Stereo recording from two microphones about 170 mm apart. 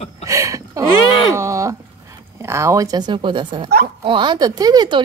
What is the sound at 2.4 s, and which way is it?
A woman's voice, 15° right (ahead or behind).